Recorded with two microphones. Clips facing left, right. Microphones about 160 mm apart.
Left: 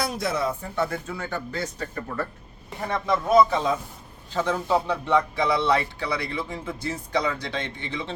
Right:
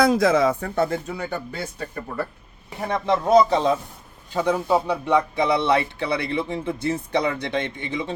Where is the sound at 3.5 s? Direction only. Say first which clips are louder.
Right 4 dB; 35° right (ahead or behind).